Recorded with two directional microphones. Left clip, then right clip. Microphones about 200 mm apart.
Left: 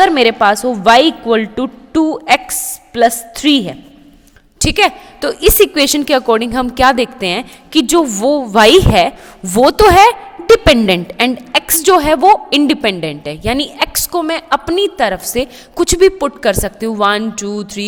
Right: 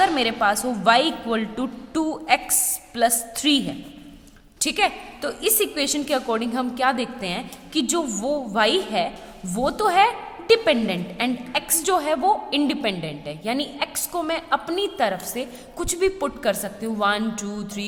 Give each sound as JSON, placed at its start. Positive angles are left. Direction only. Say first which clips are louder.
{"t": 0.0, "sound": "a woman's voice", "louder": "left 10 dB", "side_deg": 40}